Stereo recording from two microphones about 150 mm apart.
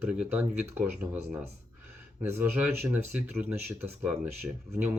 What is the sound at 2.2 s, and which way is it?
Speech, 15° right (ahead or behind).